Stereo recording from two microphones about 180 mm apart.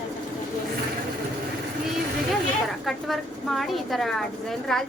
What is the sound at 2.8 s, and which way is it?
A woman's voice, centre (ahead or behind).